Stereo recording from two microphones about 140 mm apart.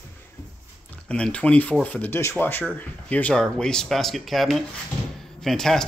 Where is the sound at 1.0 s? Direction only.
10° left (ahead or behind).